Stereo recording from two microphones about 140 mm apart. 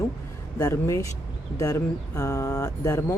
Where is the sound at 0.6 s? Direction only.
20° left (ahead or behind).